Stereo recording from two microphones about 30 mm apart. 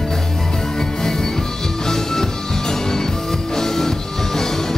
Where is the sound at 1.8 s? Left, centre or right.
Centre.